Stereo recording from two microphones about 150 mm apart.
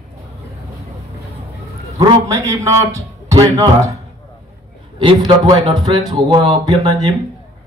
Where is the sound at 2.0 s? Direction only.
20° right (ahead or behind).